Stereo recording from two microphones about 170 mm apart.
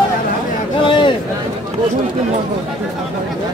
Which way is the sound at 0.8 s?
30° left (ahead or behind).